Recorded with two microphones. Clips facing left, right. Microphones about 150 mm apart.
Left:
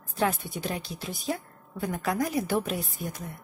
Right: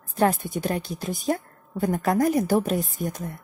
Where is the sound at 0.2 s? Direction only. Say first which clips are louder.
Right 6 dB; 45° right (ahead or behind).